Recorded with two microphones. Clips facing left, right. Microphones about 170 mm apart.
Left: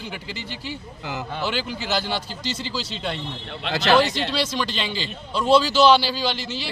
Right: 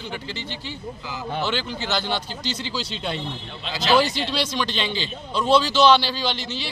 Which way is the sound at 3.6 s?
60° left (ahead or behind).